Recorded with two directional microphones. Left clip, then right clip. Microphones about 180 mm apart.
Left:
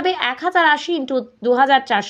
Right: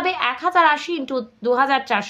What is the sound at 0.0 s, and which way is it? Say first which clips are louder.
A woman's voice: left 1 dB; 25° left (ahead or behind).